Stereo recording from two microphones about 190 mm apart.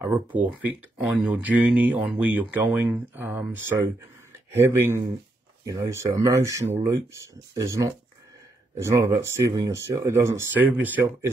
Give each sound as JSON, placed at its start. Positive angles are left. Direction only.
{"t": 0.0, "sound": "speech", "side_deg": -10}